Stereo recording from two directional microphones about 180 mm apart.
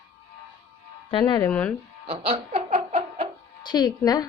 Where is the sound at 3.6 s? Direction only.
25° left (ahead or behind).